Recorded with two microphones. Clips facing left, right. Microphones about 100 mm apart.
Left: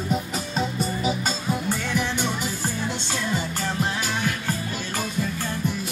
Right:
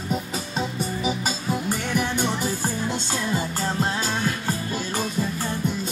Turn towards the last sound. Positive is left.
turn(degrees=-30)  # may be behind; listen again after turning